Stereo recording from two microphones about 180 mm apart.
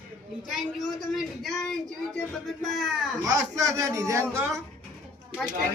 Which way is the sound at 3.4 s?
15° right (ahead or behind).